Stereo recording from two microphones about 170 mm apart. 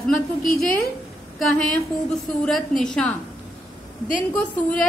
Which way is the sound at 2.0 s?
5° left (ahead or behind).